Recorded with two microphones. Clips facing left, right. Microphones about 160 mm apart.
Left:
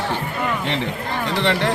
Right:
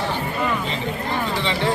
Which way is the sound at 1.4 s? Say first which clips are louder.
Left 5 dB; 65° left (ahead or behind).